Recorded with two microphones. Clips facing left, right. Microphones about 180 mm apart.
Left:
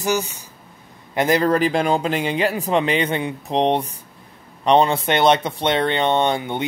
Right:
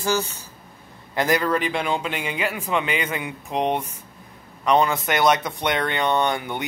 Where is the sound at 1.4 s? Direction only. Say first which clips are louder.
Left 5 dB; 40° left (ahead or behind).